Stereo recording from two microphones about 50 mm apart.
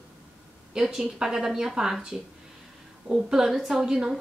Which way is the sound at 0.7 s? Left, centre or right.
Centre.